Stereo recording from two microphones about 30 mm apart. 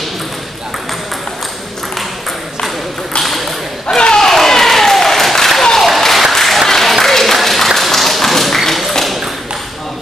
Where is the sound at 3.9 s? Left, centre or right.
Left.